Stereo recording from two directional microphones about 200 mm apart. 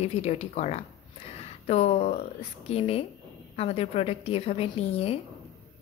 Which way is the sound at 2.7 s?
30° left (ahead or behind).